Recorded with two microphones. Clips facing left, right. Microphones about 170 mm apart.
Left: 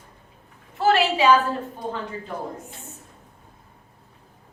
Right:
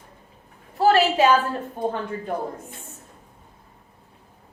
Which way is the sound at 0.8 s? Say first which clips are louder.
Right 2 dB; 40° right (ahead or behind).